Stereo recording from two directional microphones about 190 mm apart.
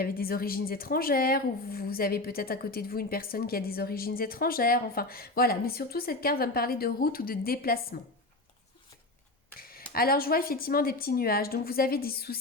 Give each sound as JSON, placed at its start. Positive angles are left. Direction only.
{"t": 0.0, "sound": "a woman's voice", "side_deg": 50}
{"t": 9.6, "sound": "a woman's voice", "side_deg": 50}